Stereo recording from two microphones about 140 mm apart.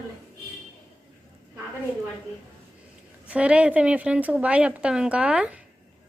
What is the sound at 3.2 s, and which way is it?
A woman's voice, 10° right (ahead or behind).